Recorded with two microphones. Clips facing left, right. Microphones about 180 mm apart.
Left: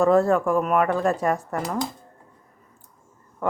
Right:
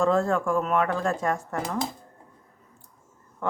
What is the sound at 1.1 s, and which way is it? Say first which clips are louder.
Speech: left 3 dB; 5° left (ahead or behind).